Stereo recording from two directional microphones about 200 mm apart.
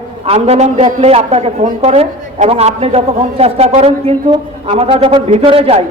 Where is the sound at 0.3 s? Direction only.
30° right (ahead or behind).